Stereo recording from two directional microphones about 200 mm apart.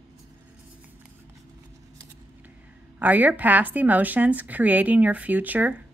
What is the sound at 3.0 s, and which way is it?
Speech, 10° right (ahead or behind).